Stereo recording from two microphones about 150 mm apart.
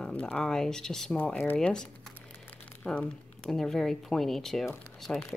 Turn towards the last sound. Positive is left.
turn(degrees=0)  # may be behind; listen again after turning